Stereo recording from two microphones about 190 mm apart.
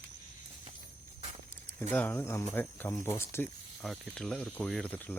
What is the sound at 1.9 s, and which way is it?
Speech, 10° left (ahead or behind).